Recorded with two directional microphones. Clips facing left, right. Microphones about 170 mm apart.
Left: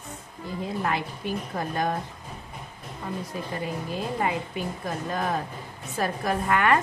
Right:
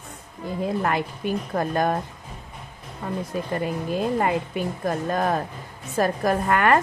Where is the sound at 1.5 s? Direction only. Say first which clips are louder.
Right 5 dB; 50° right (ahead or behind).